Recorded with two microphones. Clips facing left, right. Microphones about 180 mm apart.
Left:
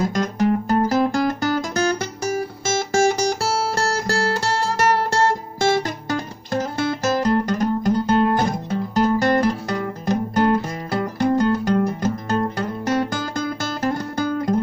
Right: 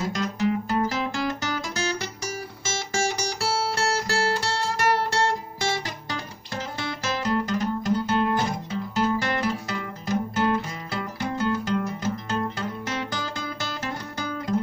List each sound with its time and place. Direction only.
0.1 s guitar: 45° left (ahead or behind)
5.1 s music: 50° left (ahead or behind)